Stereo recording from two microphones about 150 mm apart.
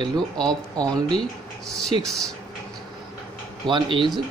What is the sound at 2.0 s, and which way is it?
Speech, 5° left (ahead or behind).